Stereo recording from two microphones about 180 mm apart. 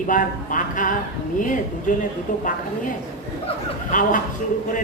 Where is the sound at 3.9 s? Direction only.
45° left (ahead or behind).